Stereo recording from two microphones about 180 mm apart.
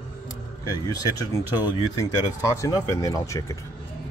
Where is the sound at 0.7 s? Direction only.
20° left (ahead or behind).